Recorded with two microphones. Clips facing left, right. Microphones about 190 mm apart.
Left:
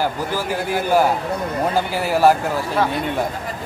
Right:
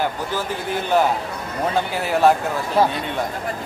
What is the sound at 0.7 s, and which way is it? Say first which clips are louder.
Speech: left 2 dB; 10° left (ahead or behind).